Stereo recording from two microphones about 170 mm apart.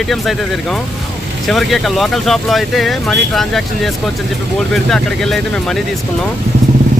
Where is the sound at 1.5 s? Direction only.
Centre (ahead or behind).